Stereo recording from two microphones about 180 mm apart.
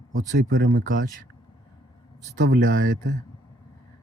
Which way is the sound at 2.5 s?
50° right (ahead or behind).